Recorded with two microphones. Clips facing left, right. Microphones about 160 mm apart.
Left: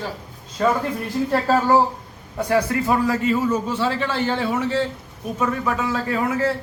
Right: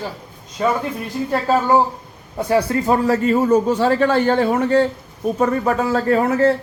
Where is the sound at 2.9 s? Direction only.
45° right (ahead or behind).